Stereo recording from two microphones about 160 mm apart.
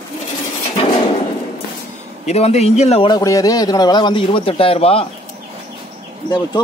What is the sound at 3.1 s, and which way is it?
A man's voice, 20° left (ahead or behind).